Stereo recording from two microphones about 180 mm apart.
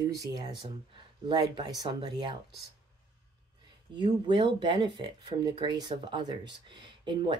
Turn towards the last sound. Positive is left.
turn(degrees=-25)  # may be behind; listen again after turning